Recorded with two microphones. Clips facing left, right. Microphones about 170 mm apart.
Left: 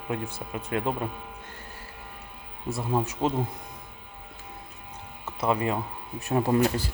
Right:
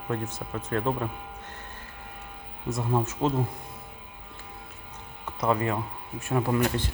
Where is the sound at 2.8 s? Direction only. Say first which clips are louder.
Even; 10° left (ahead or behind).